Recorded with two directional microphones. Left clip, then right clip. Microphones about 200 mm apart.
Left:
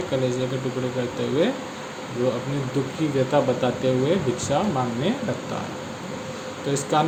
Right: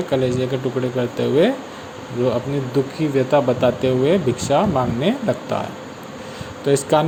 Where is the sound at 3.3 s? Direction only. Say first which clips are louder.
Right 6 dB; 35° right (ahead or behind).